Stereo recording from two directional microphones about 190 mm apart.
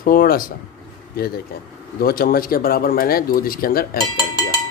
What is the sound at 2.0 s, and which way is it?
Speech, 50° left (ahead or behind).